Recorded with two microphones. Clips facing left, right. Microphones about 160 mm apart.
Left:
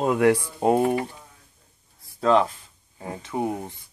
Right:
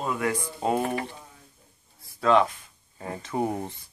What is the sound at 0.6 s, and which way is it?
Speech, 55° left (ahead or behind).